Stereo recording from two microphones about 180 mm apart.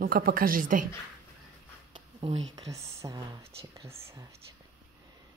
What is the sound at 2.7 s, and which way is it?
Speech, 15° right (ahead or behind).